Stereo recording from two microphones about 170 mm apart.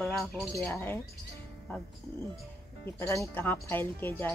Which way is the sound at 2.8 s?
15° left (ahead or behind).